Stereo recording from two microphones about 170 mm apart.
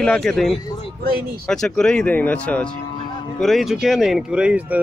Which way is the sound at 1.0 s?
60° right (ahead or behind).